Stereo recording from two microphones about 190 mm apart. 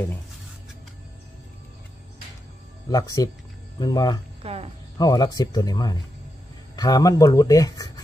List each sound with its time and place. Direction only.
2.9 s speech: 20° left (ahead or behind)
4.4 s speech: 30° right (ahead or behind)
4.9 s speech: 20° left (ahead or behind)